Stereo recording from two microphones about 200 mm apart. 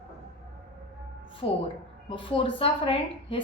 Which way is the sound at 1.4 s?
30° left (ahead or behind).